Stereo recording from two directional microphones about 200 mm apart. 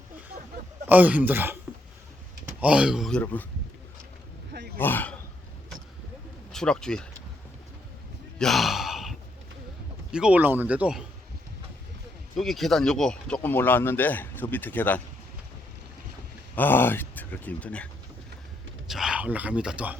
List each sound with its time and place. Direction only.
0.9 s speech: 10° right (ahead or behind)
4.8 s speech: 10° left (ahead or behind)
6.5 s speech: 5° left (ahead or behind)
8.4 s sigh: centre (ahead or behind)
10.1 s speech: 5° right (ahead or behind)
12.4 s speech: centre (ahead or behind)
16.6 s speech: 10° left (ahead or behind)
18.9 s speech: centre (ahead or behind)